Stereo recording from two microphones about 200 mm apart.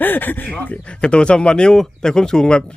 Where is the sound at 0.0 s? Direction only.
10° left (ahead or behind).